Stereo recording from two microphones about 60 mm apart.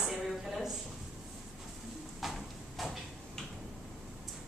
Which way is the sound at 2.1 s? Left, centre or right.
Centre.